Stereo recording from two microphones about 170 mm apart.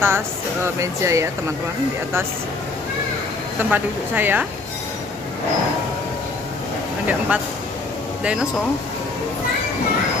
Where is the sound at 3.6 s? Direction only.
10° right (ahead or behind).